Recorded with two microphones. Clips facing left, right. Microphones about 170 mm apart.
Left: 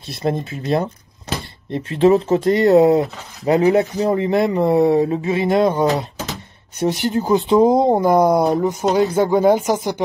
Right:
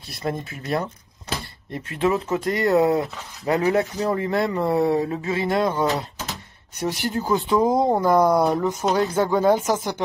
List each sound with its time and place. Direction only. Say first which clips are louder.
0.1 s speech: left 6 dB; 25° left (ahead or behind)